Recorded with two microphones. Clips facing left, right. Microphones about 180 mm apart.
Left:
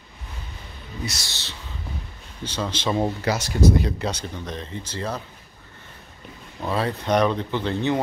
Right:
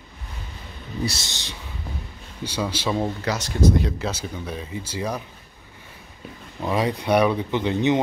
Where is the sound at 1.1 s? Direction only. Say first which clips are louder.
Right 4 dB; 20° right (ahead or behind).